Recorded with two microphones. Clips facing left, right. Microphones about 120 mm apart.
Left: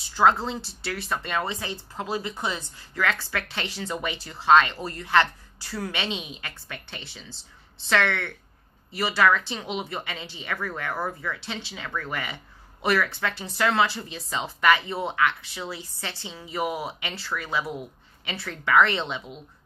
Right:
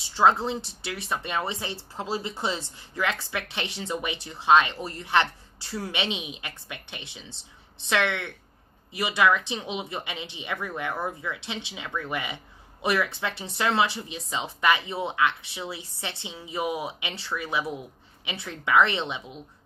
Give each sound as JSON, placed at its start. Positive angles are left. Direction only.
{"t": 0.1, "sound": "speech", "side_deg": -20}